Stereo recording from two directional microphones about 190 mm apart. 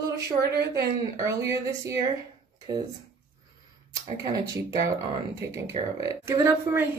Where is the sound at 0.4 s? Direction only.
60° right (ahead or behind).